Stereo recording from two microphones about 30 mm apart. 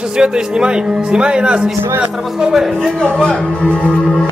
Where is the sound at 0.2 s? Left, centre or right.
Right.